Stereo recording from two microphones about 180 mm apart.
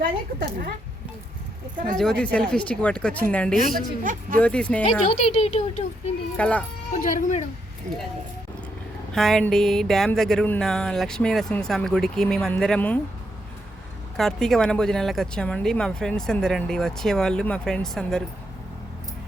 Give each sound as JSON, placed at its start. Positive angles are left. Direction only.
{"t": 0.0, "sound": "a woman's voice", "side_deg": -50}
{"t": 2.0, "sound": "speech", "side_deg": 5}
{"t": 3.8, "sound": "a woman's voice", "side_deg": -50}
{"t": 4.4, "sound": "speech", "side_deg": 5}
{"t": 4.8, "sound": "speech", "side_deg": 35}
{"t": 6.3, "sound": "speech", "side_deg": 5}
{"t": 7.0, "sound": "speech", "side_deg": 45}
{"t": 9.1, "sound": "speech", "side_deg": 0}
{"t": 14.2, "sound": "speech", "side_deg": 0}